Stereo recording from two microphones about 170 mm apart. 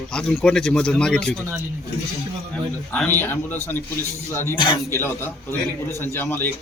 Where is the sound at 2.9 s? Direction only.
10° left (ahead or behind).